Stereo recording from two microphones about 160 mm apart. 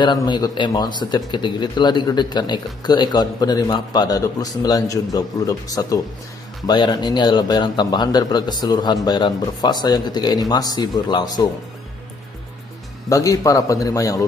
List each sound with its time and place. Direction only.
0.0 s speech: 30° left (ahead or behind)
13.1 s speech: 20° left (ahead or behind)